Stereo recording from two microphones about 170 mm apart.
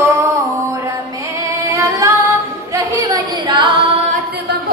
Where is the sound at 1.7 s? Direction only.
20° right (ahead or behind).